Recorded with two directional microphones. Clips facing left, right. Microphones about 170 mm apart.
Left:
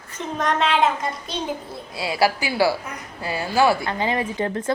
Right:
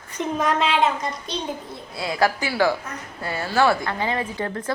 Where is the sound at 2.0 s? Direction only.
10° left (ahead or behind).